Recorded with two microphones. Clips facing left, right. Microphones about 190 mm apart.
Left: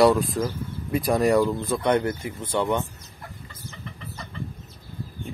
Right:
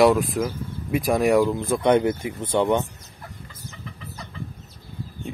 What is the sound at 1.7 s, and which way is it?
Speech, 20° right (ahead or behind).